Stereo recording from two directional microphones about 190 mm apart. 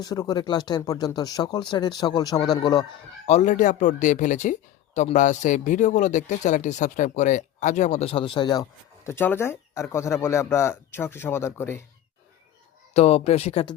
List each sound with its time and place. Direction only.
0.0 s speech: 20° left (ahead or behind)
3.2 s speech: 35° left (ahead or behind)
9.0 s speech: 10° left (ahead or behind)
12.9 s speech: 35° left (ahead or behind)